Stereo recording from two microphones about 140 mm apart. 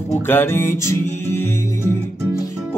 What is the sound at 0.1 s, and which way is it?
Music, 15° left (ahead or behind).